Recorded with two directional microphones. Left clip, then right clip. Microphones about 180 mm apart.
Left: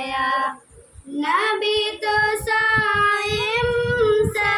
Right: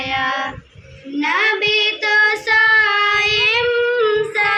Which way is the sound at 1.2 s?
20° right (ahead or behind).